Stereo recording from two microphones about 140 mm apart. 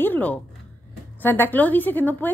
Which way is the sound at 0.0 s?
10° left (ahead or behind).